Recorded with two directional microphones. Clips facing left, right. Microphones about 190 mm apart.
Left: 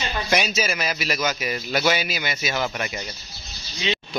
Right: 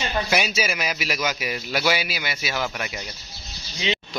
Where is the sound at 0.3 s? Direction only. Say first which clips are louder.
Left 4 dB; 10° right (ahead or behind).